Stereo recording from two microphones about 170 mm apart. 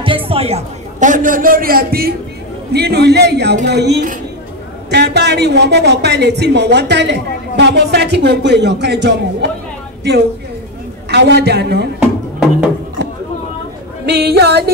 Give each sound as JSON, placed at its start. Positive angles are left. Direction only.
{"t": 0.0, "sound": "a man's voice", "side_deg": -30}
{"t": 2.7, "sound": "a woman's voice", "side_deg": -75}
{"t": 11.1, "sound": "speech", "side_deg": -85}
{"t": 12.0, "sound": "music", "side_deg": -5}
{"t": 14.0, "sound": "speech", "side_deg": -75}